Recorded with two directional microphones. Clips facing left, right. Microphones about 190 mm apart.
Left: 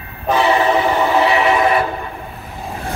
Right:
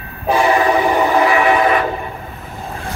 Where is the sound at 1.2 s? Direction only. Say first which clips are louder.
Even; 30° left (ahead or behind).